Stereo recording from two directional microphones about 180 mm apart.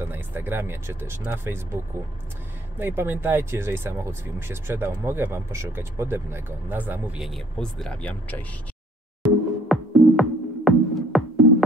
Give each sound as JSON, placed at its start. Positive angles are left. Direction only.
{"t": 0.0, "sound": "speech", "side_deg": -10}
{"t": 2.8, "sound": "speech", "side_deg": -10}
{"t": 9.2, "sound": "music", "side_deg": 0}